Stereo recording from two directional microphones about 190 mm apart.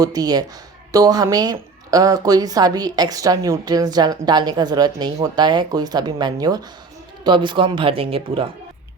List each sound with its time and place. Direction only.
0.0 s speech: 20° right (ahead or behind)